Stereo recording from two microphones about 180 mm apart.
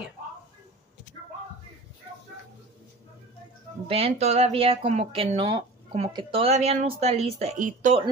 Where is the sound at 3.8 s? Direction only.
35° right (ahead or behind).